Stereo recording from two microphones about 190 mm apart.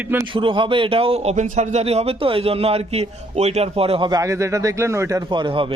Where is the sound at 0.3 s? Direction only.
25° right (ahead or behind).